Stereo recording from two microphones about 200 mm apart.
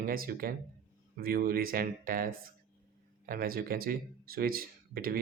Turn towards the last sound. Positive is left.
turn(degrees=-45)  # may be behind; listen again after turning